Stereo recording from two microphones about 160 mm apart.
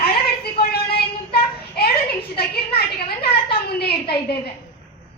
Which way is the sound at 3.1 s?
80° left.